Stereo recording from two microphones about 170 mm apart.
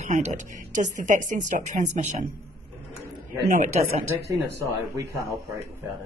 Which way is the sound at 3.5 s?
45° right (ahead or behind).